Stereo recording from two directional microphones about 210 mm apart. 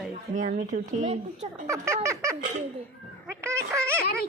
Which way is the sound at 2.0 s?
15° right (ahead or behind).